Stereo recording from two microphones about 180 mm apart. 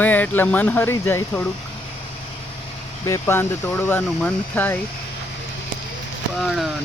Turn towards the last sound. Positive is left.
turn(degrees=0)  # may be behind; listen again after turning